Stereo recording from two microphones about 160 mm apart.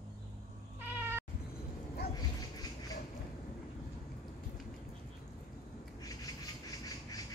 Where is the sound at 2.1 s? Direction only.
25° left (ahead or behind).